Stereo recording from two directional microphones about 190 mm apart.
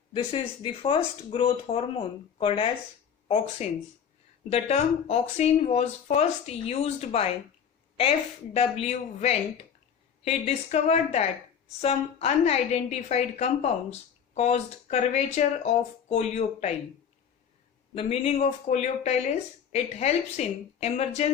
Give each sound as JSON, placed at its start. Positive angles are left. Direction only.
{"t": 0.1, "sound": "speech", "side_deg": 30}
{"t": 8.5, "sound": "speech", "side_deg": 35}
{"t": 17.9, "sound": "speech", "side_deg": 30}